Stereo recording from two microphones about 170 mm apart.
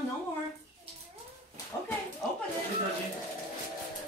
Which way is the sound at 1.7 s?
15° left (ahead or behind).